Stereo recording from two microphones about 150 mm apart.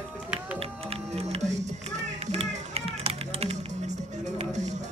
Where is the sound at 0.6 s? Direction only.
40° right (ahead or behind).